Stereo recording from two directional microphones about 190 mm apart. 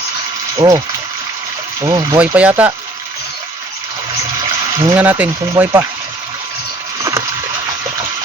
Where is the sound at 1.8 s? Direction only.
15° right (ahead or behind).